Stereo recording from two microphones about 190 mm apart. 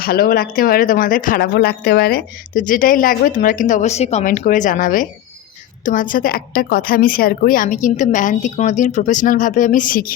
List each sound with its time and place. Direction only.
0.0 s a woman's voice: 50° left (ahead or behind)